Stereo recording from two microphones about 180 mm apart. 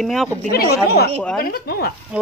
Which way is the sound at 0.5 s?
60° left (ahead or behind).